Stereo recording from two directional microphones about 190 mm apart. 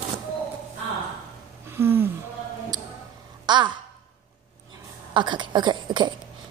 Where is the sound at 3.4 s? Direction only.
25° right (ahead or behind).